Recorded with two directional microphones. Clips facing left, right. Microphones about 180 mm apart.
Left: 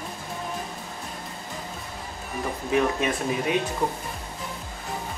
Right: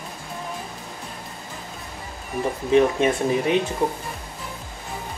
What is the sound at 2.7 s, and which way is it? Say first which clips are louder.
Speech: right 6 dB; 25° right (ahead or behind).